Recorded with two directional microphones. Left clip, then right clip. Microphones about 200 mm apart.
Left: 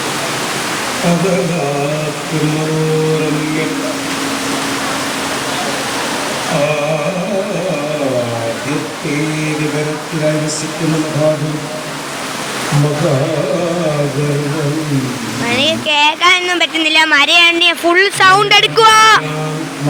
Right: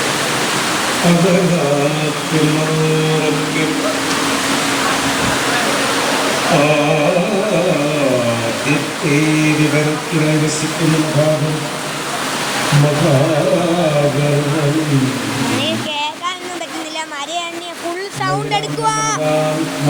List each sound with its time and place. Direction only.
15.6 s speech: 25° left (ahead or behind)